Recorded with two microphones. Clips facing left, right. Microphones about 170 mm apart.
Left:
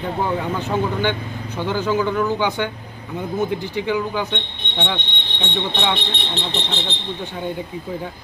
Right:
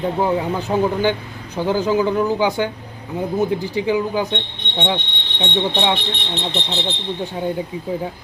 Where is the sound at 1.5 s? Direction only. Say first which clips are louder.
Right 3 dB; 35° right (ahead or behind).